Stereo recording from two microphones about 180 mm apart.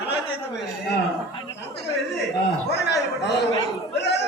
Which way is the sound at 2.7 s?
70° left (ahead or behind).